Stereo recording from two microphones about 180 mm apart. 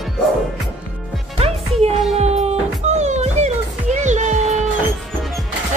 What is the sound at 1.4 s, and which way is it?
Music, 35° right (ahead or behind).